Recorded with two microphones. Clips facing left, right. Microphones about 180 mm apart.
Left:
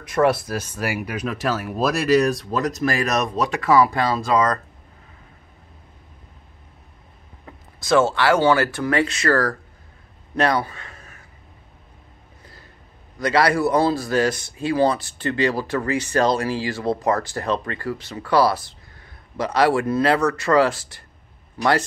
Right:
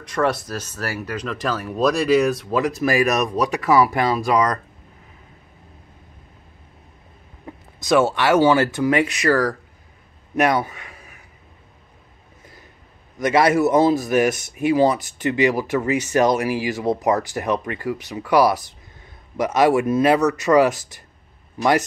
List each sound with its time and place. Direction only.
0.0 s speech: 10° left (ahead or behind); by 4.6 s 15° right (ahead or behind)
7.8 s speech: 15° right (ahead or behind)
10.3 s a sound: 20° right (ahead or behind)
13.2 s speech: 20° right (ahead or behind)